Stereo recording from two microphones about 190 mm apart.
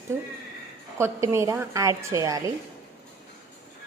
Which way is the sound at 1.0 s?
15° right (ahead or behind).